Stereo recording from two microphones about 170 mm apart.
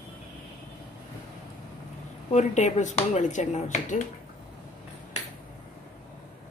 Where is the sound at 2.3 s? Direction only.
45° left (ahead or behind).